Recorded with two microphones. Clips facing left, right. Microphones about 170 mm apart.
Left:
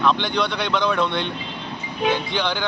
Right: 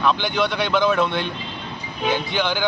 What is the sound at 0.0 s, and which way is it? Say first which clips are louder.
A man's voice: even; 5° right (ahead or behind).